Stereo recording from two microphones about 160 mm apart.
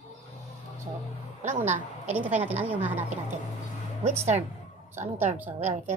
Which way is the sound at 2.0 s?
10° right (ahead or behind).